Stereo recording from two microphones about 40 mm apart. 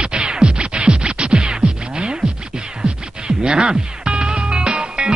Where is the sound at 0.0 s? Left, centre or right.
Right.